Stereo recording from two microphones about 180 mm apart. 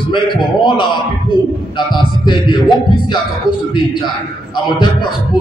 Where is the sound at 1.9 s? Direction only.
25° left (ahead or behind).